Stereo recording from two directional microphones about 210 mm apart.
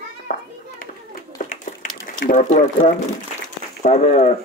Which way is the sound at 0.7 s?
40° left (ahead or behind).